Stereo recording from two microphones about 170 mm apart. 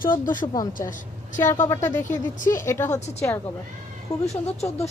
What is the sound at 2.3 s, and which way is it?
Speech, 50° left (ahead or behind).